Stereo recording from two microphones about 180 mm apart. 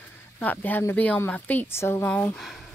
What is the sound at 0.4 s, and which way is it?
A woman's voice, 10° left (ahead or behind).